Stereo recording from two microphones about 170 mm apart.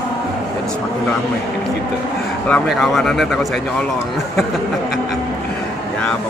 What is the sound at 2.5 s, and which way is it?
Speech, centre (ahead or behind).